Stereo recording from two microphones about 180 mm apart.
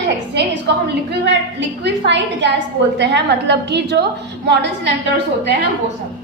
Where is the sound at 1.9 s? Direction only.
75° right (ahead or behind).